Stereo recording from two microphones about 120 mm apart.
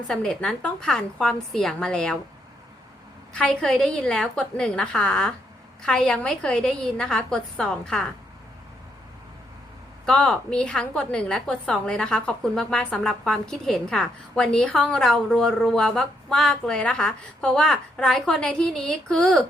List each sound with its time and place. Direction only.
0.1 s a woman's voice: 5° left (ahead or behind)
3.3 s a woman's voice: 5° left (ahead or behind)
10.1 s a woman's voice: 5° left (ahead or behind)